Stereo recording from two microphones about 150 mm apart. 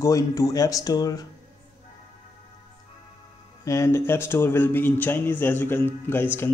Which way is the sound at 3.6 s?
20° left (ahead or behind).